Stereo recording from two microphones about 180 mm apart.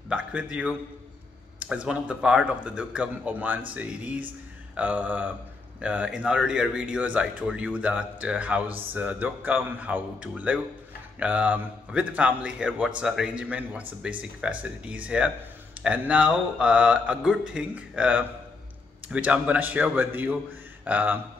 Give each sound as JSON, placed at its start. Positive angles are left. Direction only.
{"t": 0.1, "sound": "a man's voice", "side_deg": -5}